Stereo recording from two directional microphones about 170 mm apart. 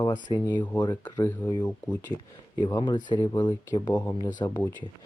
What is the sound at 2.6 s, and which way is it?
Speech, 25° left (ahead or behind).